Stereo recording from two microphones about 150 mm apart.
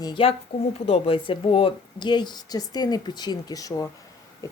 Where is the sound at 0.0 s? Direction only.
35° left (ahead or behind).